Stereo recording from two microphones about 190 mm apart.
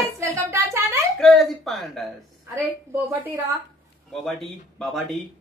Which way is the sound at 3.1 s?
10° right (ahead or behind).